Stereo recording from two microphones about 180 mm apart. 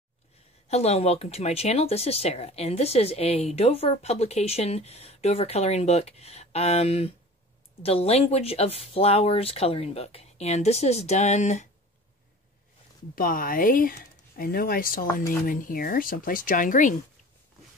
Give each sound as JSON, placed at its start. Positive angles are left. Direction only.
{"t": 0.7, "sound": "speech", "side_deg": 35}
{"t": 13.1, "sound": "speech", "side_deg": 50}